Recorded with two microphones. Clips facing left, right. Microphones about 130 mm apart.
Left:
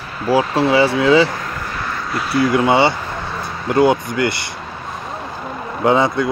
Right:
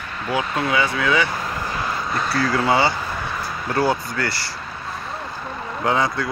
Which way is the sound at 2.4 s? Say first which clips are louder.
Left 5 dB; 20° left (ahead or behind).